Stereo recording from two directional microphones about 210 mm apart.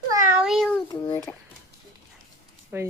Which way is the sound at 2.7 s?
10° right (ahead or behind).